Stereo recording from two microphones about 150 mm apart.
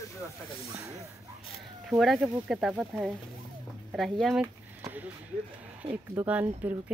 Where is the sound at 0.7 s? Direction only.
20° right (ahead or behind).